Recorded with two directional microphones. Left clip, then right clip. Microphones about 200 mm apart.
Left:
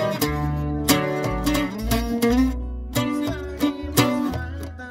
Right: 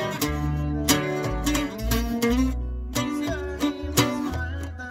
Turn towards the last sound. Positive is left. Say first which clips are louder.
# left 3 dB
turn(degrees=40)  # may be behind; listen again after turning